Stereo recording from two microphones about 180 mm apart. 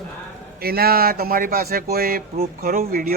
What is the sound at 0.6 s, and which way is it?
A man's voice, 60° right (ahead or behind).